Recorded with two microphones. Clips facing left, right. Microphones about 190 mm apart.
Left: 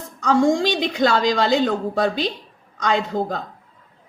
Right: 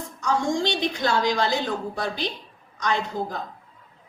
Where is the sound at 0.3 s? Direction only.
90° left.